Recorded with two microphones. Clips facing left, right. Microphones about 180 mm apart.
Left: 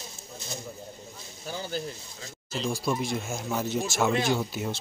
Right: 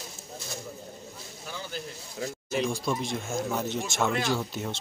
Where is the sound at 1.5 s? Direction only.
35° left (ahead or behind).